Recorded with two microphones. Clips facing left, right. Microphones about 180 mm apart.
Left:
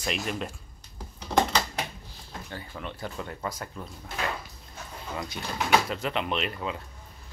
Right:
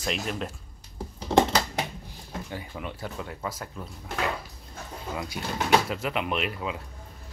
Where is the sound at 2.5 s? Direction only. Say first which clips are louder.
Left 1 dB; 10° right (ahead or behind).